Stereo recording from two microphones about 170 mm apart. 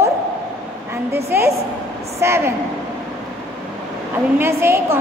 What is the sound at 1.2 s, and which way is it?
A woman's voice, 15° right (ahead or behind).